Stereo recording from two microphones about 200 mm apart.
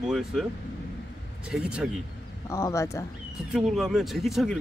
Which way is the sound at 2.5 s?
15° left (ahead or behind).